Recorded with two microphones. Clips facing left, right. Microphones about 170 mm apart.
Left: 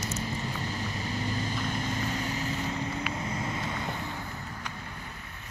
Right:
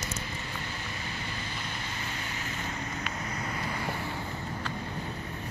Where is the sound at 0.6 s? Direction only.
40° left (ahead or behind).